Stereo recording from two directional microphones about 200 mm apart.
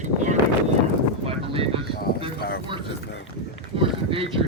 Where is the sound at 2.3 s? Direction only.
50° left (ahead or behind).